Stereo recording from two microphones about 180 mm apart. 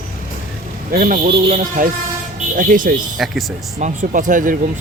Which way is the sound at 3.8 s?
45° right (ahead or behind).